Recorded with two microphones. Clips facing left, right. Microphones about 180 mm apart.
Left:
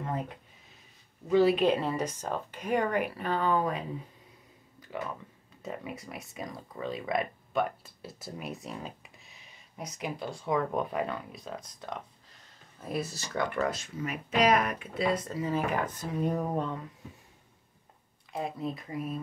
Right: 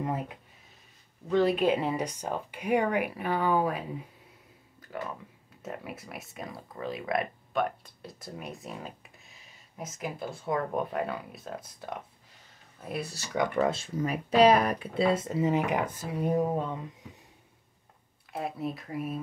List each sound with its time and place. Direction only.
1.3 s speech: 5° left (ahead or behind)
1.8 s speech: 15° right (ahead or behind)
5.6 s speech: 5° right (ahead or behind)
13.3 s speech: 15° right (ahead or behind)
13.7 s speech: 35° right (ahead or behind); by 16.8 s 15° right (ahead or behind)
18.3 s speech: 5° right (ahead or behind)